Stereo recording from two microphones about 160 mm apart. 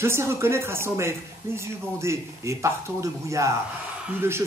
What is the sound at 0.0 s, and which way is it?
Speech, 15° right (ahead or behind).